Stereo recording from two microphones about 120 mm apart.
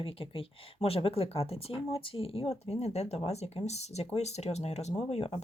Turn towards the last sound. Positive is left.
turn(degrees=60)  # may be behind; listen again after turning